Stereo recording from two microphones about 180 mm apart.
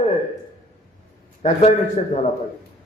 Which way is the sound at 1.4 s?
35° left (ahead or behind).